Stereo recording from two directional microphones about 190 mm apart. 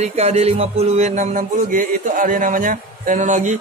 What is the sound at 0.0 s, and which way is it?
Music, 35° right (ahead or behind).